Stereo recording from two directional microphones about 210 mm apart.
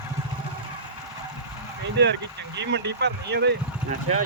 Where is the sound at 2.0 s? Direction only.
55° right (ahead or behind).